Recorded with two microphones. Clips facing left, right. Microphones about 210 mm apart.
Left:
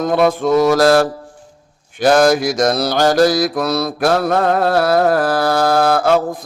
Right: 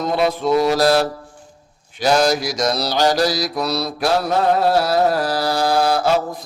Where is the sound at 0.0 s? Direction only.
50° left (ahead or behind).